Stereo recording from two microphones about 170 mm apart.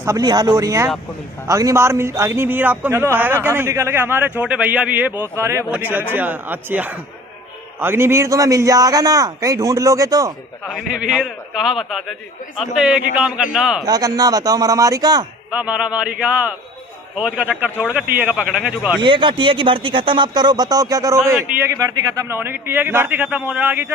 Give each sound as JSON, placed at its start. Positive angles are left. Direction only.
{"t": 0.0, "sound": "a man's voice", "side_deg": -20}
{"t": 10.7, "sound": "a man's voice", "side_deg": -5}
{"t": 13.8, "sound": "a man's voice", "side_deg": -20}
{"t": 15.5, "sound": "a man's voice", "side_deg": -10}
{"t": 18.9, "sound": "a man's voice", "side_deg": -30}